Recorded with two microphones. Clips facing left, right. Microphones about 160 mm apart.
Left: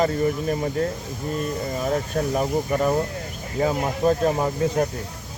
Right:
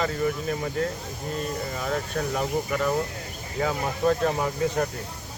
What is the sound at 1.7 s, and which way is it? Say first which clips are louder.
Speech: left 6 dB; 30° left (ahead or behind).